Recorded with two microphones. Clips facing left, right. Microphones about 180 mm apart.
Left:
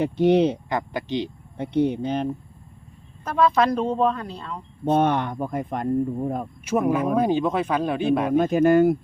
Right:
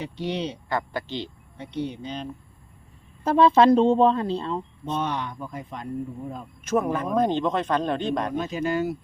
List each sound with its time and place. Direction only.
0.0 s speech: 55° left (ahead or behind)
0.7 s speech: 15° left (ahead or behind)
1.5 s speech: 55° left (ahead or behind)
3.2 s speech: 30° right (ahead or behind)
4.9 s speech: 55° left (ahead or behind)
6.7 s speech: 10° left (ahead or behind)
8.3 s speech: 55° left (ahead or behind)